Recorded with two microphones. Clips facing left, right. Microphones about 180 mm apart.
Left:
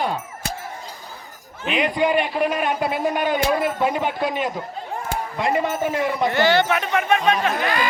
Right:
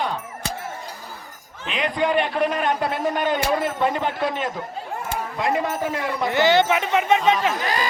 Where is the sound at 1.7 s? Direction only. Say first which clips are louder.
Left 2 dB; 5° left (ahead or behind).